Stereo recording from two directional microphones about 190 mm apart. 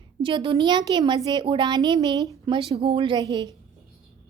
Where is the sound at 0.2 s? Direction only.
25° right (ahead or behind).